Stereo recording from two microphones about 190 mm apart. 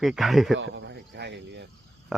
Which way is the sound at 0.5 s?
75° right (ahead or behind).